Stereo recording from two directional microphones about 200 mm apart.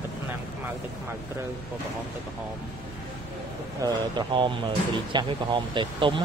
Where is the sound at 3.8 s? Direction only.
20° right (ahead or behind).